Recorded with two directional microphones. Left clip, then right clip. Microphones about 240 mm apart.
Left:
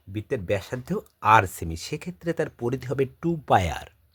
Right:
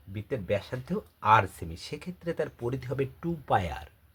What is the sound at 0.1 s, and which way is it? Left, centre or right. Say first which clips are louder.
Speech: left 4 dB; left.